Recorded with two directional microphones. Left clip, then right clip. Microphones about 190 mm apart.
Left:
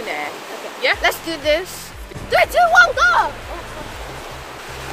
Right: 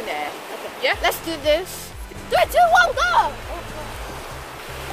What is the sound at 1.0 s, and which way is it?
Speech, 10° right (ahead or behind).